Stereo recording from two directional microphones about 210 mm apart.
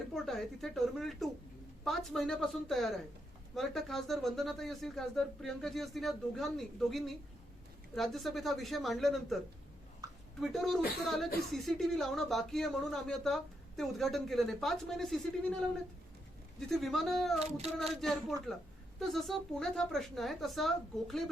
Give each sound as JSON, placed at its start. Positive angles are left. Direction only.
{"t": 0.1, "sound": "speech", "side_deg": 0}
{"t": 10.0, "sound": "a sound", "side_deg": -15}
{"t": 10.4, "sound": "speech", "side_deg": 0}